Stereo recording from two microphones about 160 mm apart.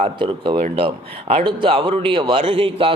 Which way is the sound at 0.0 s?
35° right (ahead or behind).